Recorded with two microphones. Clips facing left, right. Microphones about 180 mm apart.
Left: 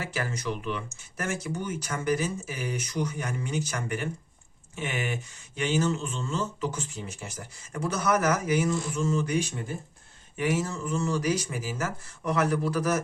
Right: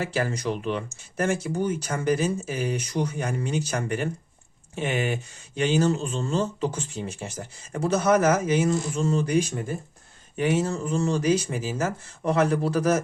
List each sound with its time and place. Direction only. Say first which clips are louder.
0.0 s speech: right 6 dB; 30° right (ahead or behind)